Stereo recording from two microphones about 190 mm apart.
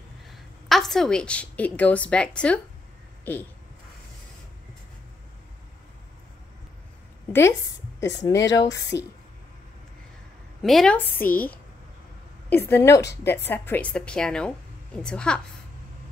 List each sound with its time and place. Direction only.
0.3 s a woman's voice: centre (ahead or behind)
8.0 s a woman's voice: 15° left (ahead or behind)
10.6 s a woman's voice: centre (ahead or behind)